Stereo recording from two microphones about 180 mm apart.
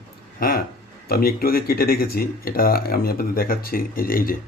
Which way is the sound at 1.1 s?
55° left (ahead or behind).